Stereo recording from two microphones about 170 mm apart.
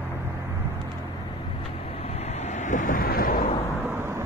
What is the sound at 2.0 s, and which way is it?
Vehicle, 40° left (ahead or behind).